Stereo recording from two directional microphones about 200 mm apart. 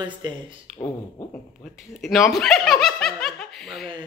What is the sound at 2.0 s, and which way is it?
Speech, centre (ahead or behind).